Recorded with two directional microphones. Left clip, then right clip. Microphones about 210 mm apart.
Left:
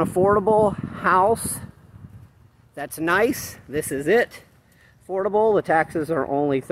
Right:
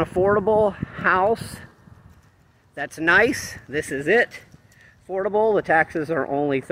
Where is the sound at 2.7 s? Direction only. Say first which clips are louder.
Right 4 dB; 15° left (ahead or behind).